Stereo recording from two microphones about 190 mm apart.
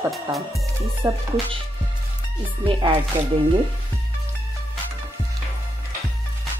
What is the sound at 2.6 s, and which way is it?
Speech, 25° right (ahead or behind).